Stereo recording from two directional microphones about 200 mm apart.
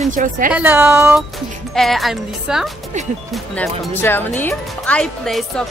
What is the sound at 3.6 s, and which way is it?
Speech, 10° left (ahead or behind).